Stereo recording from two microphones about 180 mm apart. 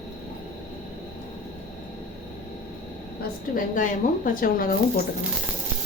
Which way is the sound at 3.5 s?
45° left (ahead or behind).